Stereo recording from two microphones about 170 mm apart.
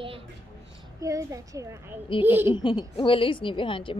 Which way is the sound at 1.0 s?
20° right (ahead or behind).